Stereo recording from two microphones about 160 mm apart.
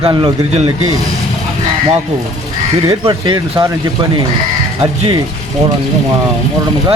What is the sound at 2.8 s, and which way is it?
Speech, 35° right (ahead or behind).